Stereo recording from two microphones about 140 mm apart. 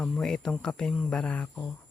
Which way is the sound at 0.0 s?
5° left (ahead or behind).